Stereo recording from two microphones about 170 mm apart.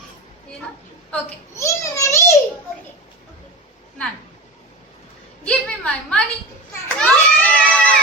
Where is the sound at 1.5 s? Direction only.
15° left (ahead or behind).